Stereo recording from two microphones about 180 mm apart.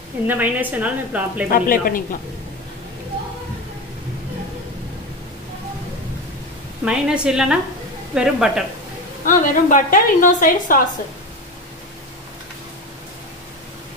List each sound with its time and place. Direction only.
0.3 s a woman's voice: 10° right (ahead or behind)
1.5 s a woman's voice: 50° left (ahead or behind)
6.8 s a woman's voice: 5° right (ahead or behind)
9.2 s a woman's voice: 45° left (ahead or behind)